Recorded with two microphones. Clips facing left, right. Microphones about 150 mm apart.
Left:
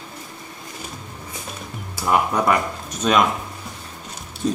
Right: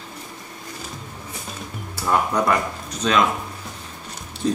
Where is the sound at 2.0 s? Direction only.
5° left (ahead or behind).